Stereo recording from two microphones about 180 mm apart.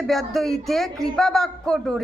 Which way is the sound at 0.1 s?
Centre (ahead or behind).